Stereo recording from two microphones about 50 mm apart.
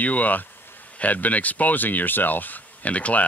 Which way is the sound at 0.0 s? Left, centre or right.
Left.